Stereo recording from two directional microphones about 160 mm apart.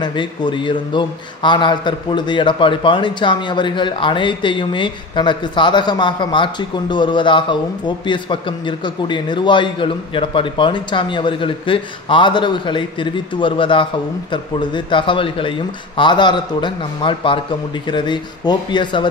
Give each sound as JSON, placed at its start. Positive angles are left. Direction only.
{"t": 0.0, "sound": "a man's voice", "side_deg": 30}